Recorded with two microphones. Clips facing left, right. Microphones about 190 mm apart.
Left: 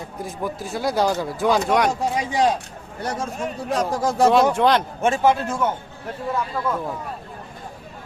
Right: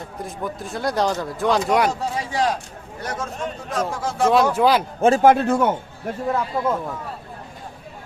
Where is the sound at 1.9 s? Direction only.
15° left (ahead or behind).